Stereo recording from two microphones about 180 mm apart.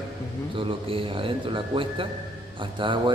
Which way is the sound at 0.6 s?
30° right (ahead or behind).